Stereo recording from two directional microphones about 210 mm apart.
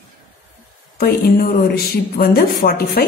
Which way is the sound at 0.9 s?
45° left (ahead or behind).